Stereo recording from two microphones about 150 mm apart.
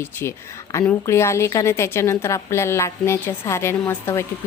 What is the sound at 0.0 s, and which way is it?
A woman's voice, 15° left (ahead or behind).